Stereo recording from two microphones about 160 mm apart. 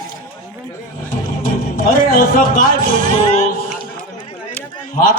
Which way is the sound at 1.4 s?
60° left (ahead or behind).